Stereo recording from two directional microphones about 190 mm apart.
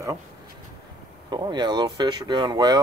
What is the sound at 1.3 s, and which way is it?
Speech, 25° right (ahead or behind).